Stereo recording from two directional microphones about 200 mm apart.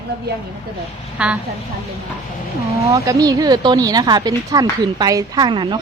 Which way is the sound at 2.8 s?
15° right (ahead or behind).